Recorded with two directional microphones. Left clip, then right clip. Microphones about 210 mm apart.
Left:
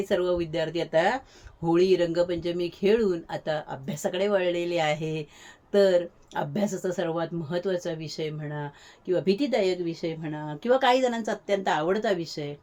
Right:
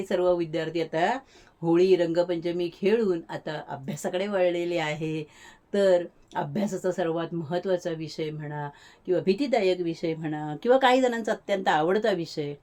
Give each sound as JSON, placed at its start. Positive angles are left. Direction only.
{"t": 0.0, "sound": "speech", "side_deg": -5}